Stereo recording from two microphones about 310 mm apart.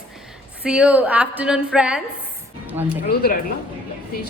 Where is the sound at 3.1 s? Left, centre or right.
Left.